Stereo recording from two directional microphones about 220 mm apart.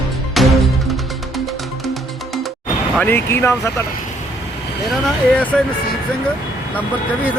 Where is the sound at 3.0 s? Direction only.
10° left (ahead or behind).